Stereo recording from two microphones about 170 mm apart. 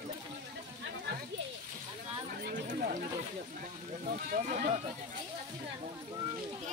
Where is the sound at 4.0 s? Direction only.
50° right (ahead or behind).